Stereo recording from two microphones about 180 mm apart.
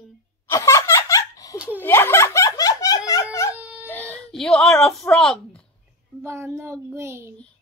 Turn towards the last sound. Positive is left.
turn(degrees=-15)  # may be behind; listen again after turning